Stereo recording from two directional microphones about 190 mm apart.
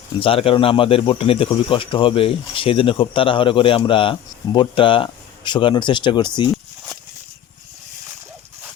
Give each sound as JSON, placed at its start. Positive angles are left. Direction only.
{"t": 0.2, "sound": "speech", "side_deg": 30}